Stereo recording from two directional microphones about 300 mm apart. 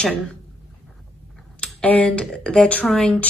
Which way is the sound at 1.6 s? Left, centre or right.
Centre.